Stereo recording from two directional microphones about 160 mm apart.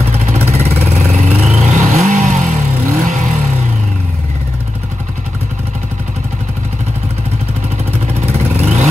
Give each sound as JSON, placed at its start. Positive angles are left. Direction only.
{"t": 0.0, "sound": "vehicle", "side_deg": -40}
{"t": 8.1, "sound": "vehicle", "side_deg": -40}